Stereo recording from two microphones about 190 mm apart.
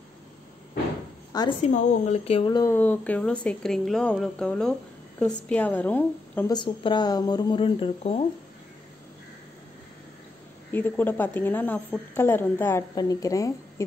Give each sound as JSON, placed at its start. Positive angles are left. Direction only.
{"t": 1.6, "sound": "a woman's voice", "side_deg": 40}
{"t": 6.5, "sound": "speech", "side_deg": 25}
{"t": 10.7, "sound": "a woman's voice", "side_deg": 10}